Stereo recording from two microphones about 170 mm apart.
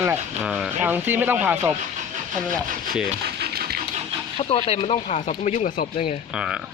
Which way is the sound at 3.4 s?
65° right (ahead or behind).